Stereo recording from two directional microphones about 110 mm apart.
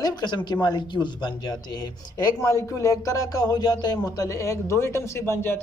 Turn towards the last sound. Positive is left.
turn(degrees=20)  # may be behind; listen again after turning